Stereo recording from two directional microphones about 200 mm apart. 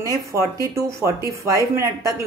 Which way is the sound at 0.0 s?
15° right (ahead or behind).